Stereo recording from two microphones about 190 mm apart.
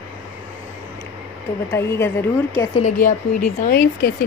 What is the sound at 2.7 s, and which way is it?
Speech, 40° left (ahead or behind).